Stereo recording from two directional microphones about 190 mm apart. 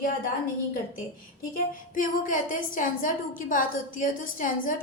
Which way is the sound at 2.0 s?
45° left (ahead or behind).